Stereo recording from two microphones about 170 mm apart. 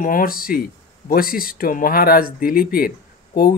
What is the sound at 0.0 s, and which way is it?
A man's voice, 60° left (ahead or behind).